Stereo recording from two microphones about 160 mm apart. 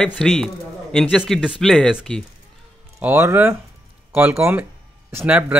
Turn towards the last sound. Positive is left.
turn(degrees=-10)  # may be behind; listen again after turning